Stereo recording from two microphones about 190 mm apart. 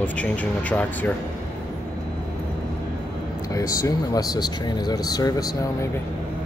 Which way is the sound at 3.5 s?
20° left (ahead or behind).